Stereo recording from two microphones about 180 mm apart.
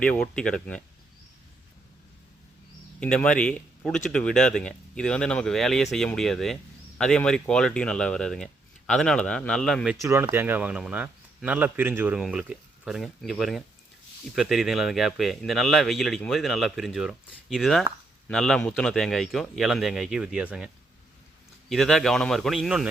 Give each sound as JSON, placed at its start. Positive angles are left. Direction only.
{"t": 0.0, "sound": "speech", "side_deg": 5}
{"t": 3.0, "sound": "speech", "side_deg": 5}
{"t": 10.0, "sound": "speech", "side_deg": -15}
{"t": 21.7, "sound": "speech", "side_deg": 0}